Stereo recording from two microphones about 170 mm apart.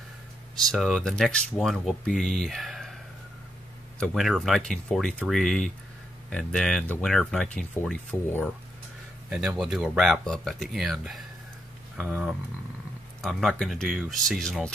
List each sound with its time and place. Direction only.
0.6 s speech: centre (ahead or behind)
4.0 s speech: centre (ahead or behind)
9.3 s speech: centre (ahead or behind)